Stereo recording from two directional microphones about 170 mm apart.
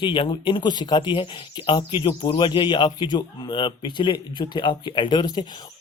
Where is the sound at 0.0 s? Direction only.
30° left (ahead or behind).